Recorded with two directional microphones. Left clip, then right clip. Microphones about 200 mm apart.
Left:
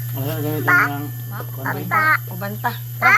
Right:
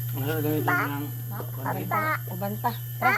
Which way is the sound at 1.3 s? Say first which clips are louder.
Left 6 dB; 15° right (ahead or behind).